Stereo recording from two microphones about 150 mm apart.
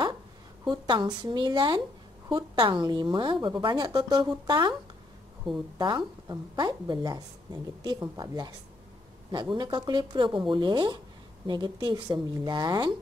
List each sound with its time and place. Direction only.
0.7 s a woman's voice: 30° right (ahead or behind)
5.4 s a woman's voice: centre (ahead or behind)
5.8 s a woman's voice: 30° right (ahead or behind)